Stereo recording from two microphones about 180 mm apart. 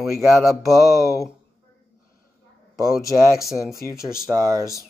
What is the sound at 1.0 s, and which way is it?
Speech, 20° left (ahead or behind).